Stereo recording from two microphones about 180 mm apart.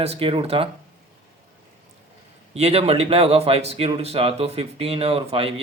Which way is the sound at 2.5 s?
35° right (ahead or behind).